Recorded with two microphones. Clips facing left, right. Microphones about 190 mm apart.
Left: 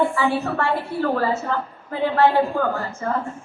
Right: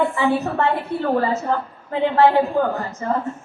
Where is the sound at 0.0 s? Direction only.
20° right (ahead or behind).